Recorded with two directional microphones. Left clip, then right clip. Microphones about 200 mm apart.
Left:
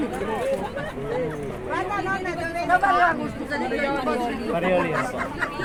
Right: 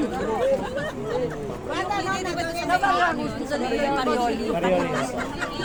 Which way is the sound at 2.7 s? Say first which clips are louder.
Left 2 dB; 35° right (ahead or behind).